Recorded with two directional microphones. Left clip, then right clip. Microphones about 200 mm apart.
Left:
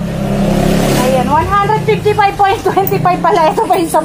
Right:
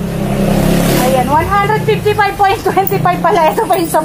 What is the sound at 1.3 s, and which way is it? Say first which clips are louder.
A woman's voice: even; 20° left (ahead or behind).